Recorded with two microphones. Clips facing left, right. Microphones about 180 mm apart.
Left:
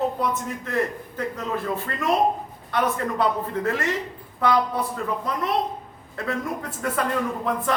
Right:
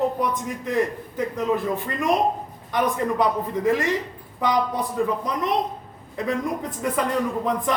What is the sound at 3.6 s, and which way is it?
A man's voice, 15° right (ahead or behind).